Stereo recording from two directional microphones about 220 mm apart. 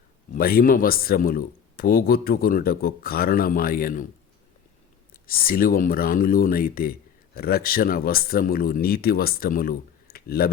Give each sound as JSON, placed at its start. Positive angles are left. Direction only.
{"t": 0.3, "sound": "speech", "side_deg": 40}
{"t": 5.2, "sound": "speech", "side_deg": 40}